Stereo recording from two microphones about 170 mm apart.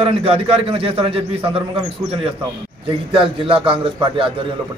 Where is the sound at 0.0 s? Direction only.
35° right (ahead or behind).